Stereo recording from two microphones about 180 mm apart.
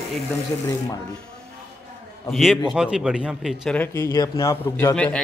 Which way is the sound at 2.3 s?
Centre (ahead or behind).